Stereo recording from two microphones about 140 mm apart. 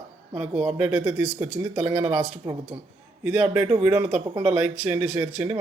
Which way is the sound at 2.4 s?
25° right (ahead or behind).